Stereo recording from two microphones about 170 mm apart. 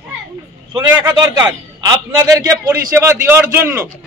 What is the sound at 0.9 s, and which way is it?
A man's voice, 20° right (ahead or behind).